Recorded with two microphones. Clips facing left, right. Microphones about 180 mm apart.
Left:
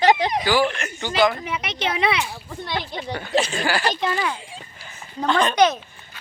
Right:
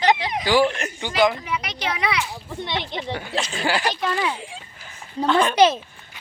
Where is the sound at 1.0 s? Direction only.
15° right (ahead or behind).